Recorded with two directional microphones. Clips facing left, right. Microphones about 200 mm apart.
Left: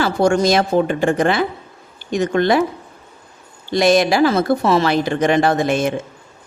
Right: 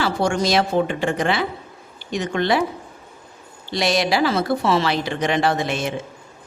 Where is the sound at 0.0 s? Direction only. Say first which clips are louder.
Left 5 dB; 45° left (ahead or behind).